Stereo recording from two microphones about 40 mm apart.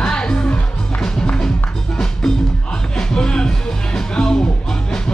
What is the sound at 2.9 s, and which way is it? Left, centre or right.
Music, centre.